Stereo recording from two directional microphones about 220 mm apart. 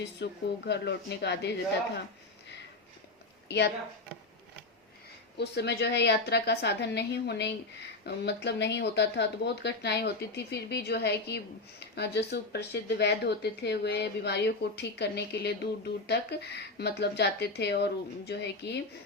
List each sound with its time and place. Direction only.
0.2 s speech: 50° left (ahead or behind)
3.5 s speech: 50° left (ahead or behind)
5.4 s speech: 50° left (ahead or behind)